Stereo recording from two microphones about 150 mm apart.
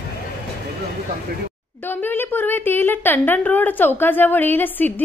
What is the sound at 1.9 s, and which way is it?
A woman's voice, 15° left (ahead or behind).